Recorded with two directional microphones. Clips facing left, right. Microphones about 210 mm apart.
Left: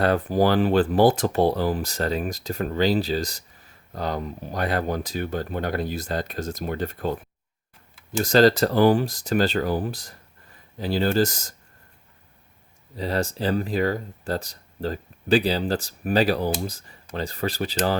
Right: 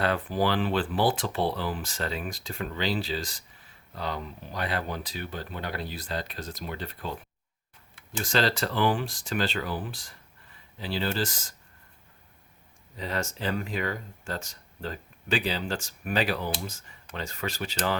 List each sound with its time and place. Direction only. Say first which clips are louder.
0.0 s speech: left 6 dB; 45° left (ahead or behind)
13.0 s speech: left 7 dB; 35° left (ahead or behind)